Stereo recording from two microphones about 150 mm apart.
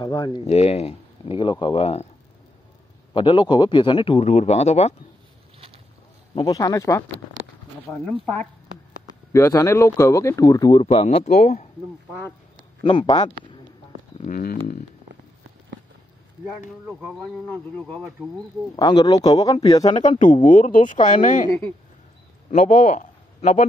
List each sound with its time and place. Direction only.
0.0 s speech: 30° left (ahead or behind)
0.5 s speech: 45° left (ahead or behind)
3.2 s speech: 35° left (ahead or behind)
6.3 s speech: 25° left (ahead or behind)
9.0 s speech: 20° left (ahead or behind)
10.8 s speech: 40° left (ahead or behind)
12.8 s speech: 30° left (ahead or behind)
14.1 s speech: 60° left (ahead or behind)
16.8 s speech: 5° right (ahead or behind)
17.5 s speech: 10° left (ahead or behind)
18.8 s speech: 30° left (ahead or behind)
20.1 s speech: 60° left (ahead or behind)
22.5 s a man's voice: 60° left (ahead or behind)